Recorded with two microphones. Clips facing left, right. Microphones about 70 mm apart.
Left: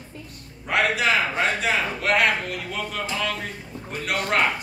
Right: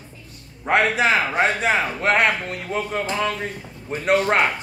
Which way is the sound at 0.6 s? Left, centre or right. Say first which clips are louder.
Right 3 dB; right.